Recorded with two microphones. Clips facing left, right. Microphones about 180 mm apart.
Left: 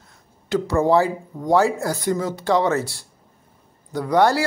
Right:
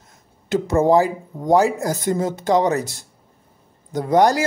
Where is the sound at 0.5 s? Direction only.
20° right (ahead or behind).